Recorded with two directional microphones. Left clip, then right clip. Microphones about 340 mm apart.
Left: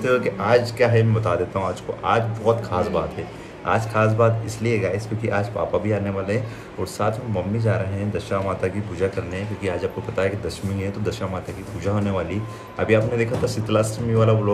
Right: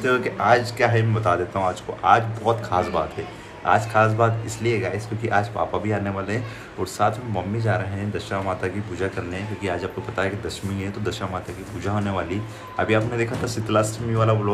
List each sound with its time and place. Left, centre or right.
0.4 s speech: centre